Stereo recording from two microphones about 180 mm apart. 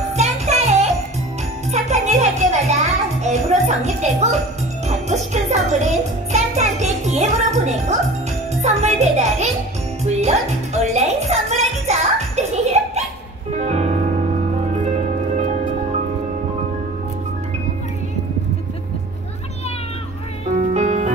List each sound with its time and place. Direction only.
0.1 s music: 40° right (ahead or behind)
20.7 s music: 40° right (ahead or behind)